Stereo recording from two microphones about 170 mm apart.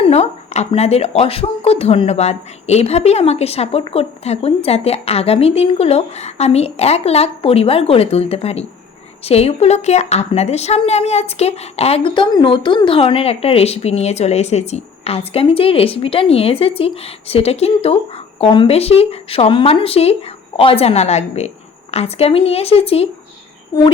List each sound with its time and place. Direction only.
0.0 s speech: 40° left (ahead or behind)